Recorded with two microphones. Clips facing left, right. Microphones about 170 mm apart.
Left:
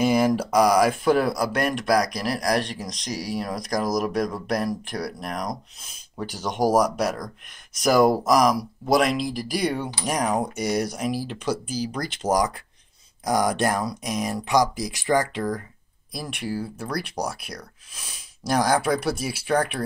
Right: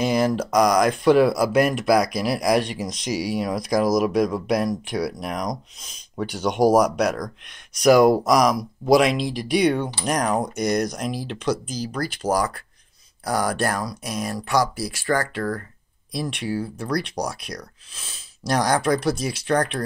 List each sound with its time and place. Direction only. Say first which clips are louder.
0.0 s speech: left 1 dB; 10° left (ahead or behind)
1.2 s speech: right 5 dB; 5° right (ahead or behind); by 15.6 s 15° left (ahead or behind)
16.1 s speech: right 4 dB; 5° left (ahead or behind)